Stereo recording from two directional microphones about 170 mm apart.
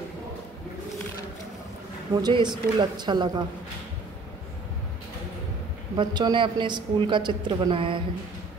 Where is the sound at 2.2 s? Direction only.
25° right (ahead or behind).